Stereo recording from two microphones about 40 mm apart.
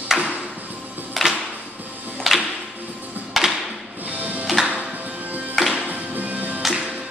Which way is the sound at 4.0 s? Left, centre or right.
Right.